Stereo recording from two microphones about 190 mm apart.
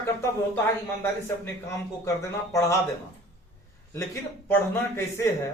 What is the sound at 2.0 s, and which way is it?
Speech, 15° left (ahead or behind).